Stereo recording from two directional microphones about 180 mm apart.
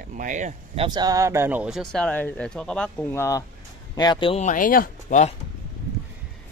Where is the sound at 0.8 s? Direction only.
20° right (ahead or behind); by 4.5 s 30° left (ahead or behind).